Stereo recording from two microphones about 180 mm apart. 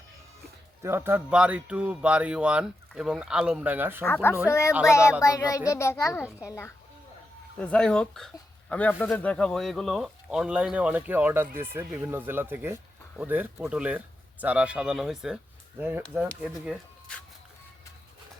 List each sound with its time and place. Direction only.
0.8 s speech: 15° right (ahead or behind)
4.0 s a child's voice: 10° left (ahead or behind); by 16.0 s 10° right (ahead or behind)
17.1 s speech: 5° left (ahead or behind)